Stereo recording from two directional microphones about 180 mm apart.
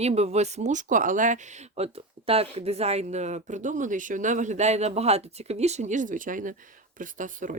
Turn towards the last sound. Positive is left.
turn(degrees=-45)  # may be behind; listen again after turning